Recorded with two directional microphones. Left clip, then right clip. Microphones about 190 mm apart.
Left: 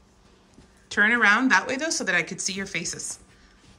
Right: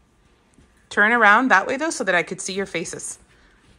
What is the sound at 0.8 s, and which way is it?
Speech, centre (ahead or behind).